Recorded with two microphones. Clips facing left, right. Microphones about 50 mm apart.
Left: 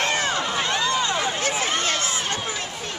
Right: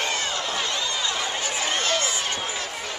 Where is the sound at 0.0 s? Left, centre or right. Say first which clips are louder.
Left 4 dB; left.